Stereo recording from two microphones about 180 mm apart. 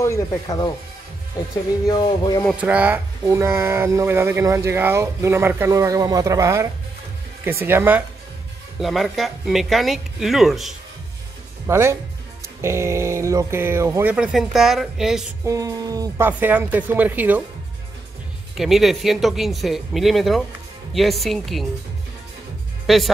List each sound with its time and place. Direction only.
0.0 s speech: 15° left (ahead or behind)
1.9 s speech: 25° left (ahead or behind)
2.5 s speech: 5° right (ahead or behind)
8.7 s speech: centre (ahead or behind)
11.6 s speech: 15° right (ahead or behind)
15.4 s speech: 20° right (ahead or behind)
18.6 s speech: centre (ahead or behind)
22.8 s speech: centre (ahead or behind)